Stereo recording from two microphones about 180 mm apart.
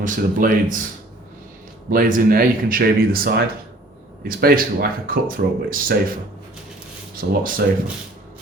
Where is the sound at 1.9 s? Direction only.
50° right (ahead or behind).